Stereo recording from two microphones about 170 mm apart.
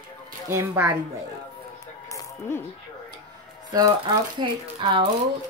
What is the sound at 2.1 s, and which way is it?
Music, 15° left (ahead or behind).